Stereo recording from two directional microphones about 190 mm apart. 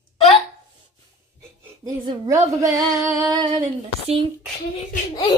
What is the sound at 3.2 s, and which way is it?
Female singing, 20° right (ahead or behind).